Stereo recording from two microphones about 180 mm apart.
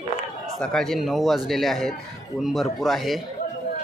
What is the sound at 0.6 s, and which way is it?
A man's voice, 5° left (ahead or behind).